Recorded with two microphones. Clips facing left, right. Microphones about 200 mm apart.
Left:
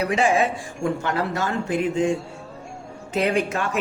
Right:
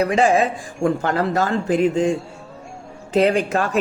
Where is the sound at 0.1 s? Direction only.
35° right (ahead or behind).